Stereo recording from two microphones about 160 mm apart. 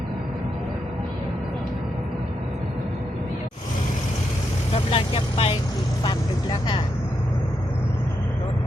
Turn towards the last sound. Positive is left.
turn(degrees=30)  # may be behind; listen again after turning